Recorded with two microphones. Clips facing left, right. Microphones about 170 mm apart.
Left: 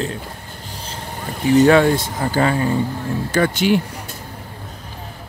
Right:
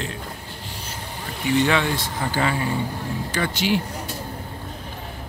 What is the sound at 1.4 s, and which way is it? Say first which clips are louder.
Speech: left 8 dB; 40° left (ahead or behind).